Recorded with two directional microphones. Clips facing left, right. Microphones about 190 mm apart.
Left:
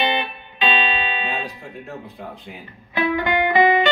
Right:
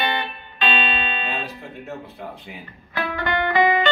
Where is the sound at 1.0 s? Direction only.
10° left (ahead or behind).